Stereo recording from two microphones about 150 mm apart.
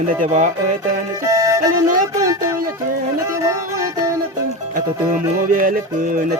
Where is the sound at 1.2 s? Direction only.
20° right (ahead or behind).